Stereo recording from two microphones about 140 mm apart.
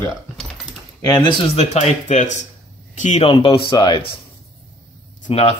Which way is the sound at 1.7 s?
55° left (ahead or behind).